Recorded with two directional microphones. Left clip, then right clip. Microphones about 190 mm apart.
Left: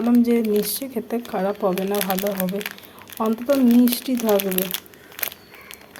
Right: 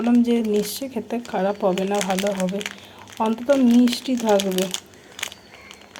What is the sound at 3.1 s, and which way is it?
Speech, 5° left (ahead or behind).